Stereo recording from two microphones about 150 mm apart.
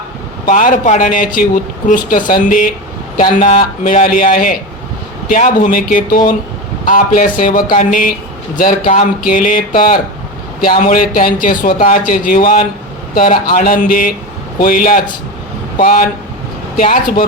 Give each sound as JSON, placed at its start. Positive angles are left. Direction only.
{"t": 0.4, "sound": "a man's voice", "side_deg": 60}